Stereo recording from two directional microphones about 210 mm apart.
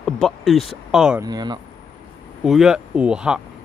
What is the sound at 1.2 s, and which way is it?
Speech, 20° right (ahead or behind).